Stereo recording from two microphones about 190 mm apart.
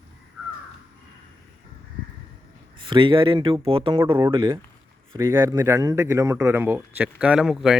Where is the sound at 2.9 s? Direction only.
25° right (ahead or behind).